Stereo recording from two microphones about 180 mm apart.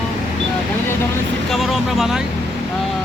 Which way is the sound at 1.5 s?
Centre (ahead or behind).